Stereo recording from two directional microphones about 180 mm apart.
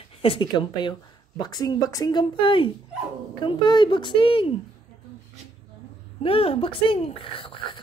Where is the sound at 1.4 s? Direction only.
20° left (ahead or behind).